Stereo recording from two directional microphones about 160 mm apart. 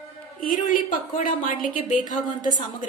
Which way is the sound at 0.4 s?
55° left (ahead or behind).